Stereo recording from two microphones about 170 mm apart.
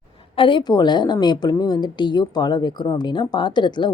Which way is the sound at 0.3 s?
30° left (ahead or behind).